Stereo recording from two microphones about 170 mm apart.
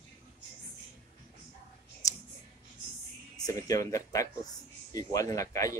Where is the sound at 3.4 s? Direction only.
20° left (ahead or behind).